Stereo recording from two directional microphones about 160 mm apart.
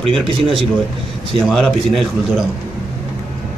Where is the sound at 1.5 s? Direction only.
Centre (ahead or behind).